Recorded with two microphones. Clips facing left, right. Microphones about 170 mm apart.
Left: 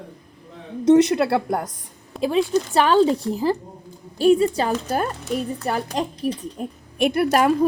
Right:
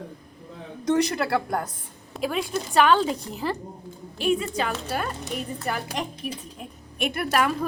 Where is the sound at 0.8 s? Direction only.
25° left (ahead or behind).